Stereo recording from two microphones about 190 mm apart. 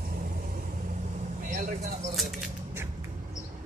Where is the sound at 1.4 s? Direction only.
45° right (ahead or behind).